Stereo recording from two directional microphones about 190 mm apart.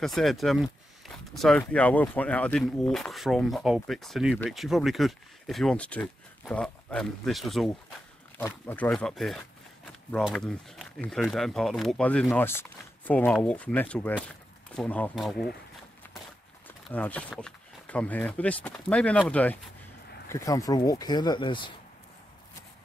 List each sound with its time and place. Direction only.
0.0 s speech: centre (ahead or behind)
8.4 s speech: 15° left (ahead or behind)
16.9 s speech: 10° left (ahead or behind); by 21.7 s 25° left (ahead or behind)